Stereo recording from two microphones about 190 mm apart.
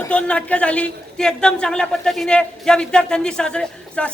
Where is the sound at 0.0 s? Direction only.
5° left (ahead or behind).